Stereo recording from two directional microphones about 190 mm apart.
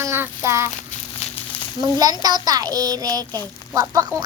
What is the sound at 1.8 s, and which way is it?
A child's voice, 20° right (ahead or behind).